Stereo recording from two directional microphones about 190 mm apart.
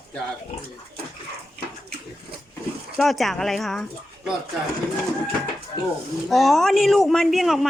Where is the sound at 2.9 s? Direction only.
Centre (ahead or behind).